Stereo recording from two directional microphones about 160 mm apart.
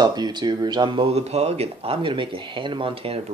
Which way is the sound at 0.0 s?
25° right (ahead or behind).